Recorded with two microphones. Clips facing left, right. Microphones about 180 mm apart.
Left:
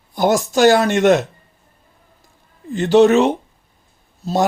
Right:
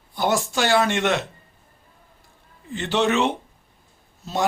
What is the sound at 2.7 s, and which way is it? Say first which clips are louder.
Speech: left 10 dB; 40° left (ahead or behind).